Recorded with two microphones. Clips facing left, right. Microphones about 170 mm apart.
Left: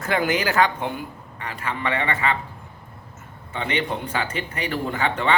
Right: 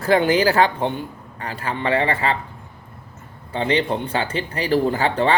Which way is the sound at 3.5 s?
30° right (ahead or behind).